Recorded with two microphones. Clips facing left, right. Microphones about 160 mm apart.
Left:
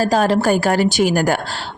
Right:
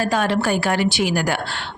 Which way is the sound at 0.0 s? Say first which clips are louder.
Left 4 dB; 40° left (ahead or behind).